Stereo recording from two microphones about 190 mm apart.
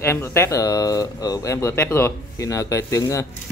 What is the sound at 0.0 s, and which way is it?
Speech, 15° left (ahead or behind).